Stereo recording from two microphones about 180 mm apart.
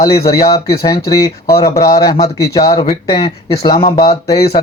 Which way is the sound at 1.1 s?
20° left (ahead or behind).